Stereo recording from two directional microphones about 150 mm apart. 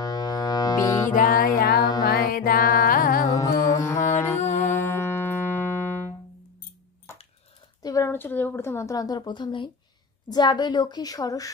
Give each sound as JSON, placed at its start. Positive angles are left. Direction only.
{"t": 0.0, "sound": "music", "side_deg": 25}
{"t": 1.1, "sound": "music", "side_deg": 70}
{"t": 1.8, "sound": "music", "side_deg": 25}
{"t": 2.0, "sound": "music", "side_deg": 80}
{"t": 3.3, "sound": "music", "side_deg": 20}
{"t": 7.8, "sound": "a woman's voice", "side_deg": 20}